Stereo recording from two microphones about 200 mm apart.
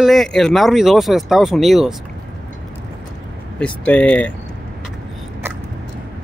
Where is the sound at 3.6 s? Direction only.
5° left (ahead or behind).